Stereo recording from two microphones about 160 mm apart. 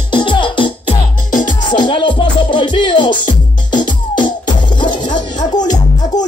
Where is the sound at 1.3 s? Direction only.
55° left (ahead or behind).